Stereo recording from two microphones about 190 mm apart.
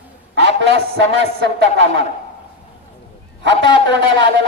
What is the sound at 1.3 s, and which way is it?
Speech, 60° right (ahead or behind).